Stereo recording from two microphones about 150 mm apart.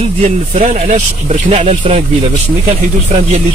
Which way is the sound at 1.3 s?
45° right (ahead or behind).